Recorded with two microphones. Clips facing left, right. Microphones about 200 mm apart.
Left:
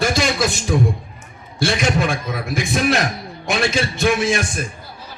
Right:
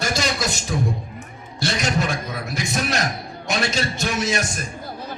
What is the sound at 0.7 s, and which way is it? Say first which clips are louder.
A man's voice: left 5 dB; 60° left (ahead or behind).